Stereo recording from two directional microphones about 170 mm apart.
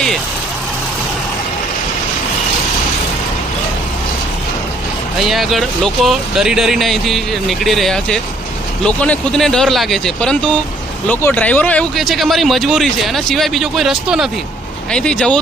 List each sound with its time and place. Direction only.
5.3 s speech: centre (ahead or behind)